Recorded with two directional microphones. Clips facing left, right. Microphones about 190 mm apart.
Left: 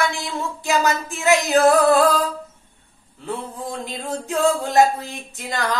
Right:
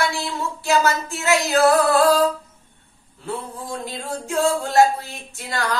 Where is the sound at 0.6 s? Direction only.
15° left (ahead or behind).